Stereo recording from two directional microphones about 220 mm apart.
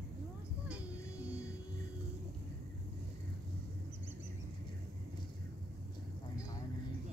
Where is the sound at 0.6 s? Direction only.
5° right (ahead or behind).